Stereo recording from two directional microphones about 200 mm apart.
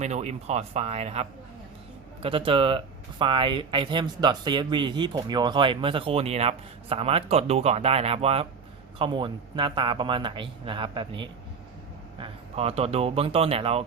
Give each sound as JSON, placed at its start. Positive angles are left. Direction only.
{"t": 0.0, "sound": "speech", "side_deg": -35}